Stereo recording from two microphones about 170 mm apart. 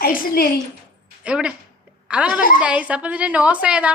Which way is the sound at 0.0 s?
65° left (ahead or behind).